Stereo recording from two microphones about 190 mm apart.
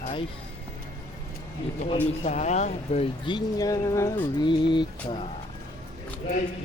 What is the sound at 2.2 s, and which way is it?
Speech, 40° left (ahead or behind).